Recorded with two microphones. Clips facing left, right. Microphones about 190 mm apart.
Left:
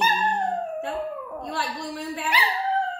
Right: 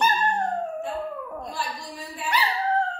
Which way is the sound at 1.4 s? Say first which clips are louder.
Left 3 dB; 70° left (ahead or behind).